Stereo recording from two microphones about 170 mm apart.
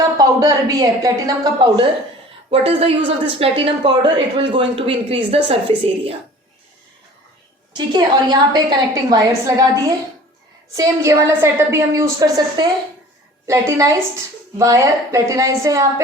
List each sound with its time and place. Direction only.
0.2 s a woman's voice: 20° right (ahead or behind)
7.9 s a woman's voice: 25° right (ahead or behind)
10.8 s a woman's voice: 20° right (ahead or behind)